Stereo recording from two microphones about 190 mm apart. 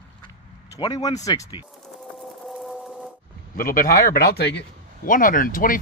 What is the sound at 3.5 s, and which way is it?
Speech, 50° left (ahead or behind).